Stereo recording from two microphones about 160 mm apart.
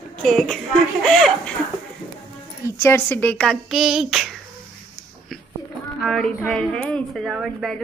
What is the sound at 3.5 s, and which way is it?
Speech, centre (ahead or behind).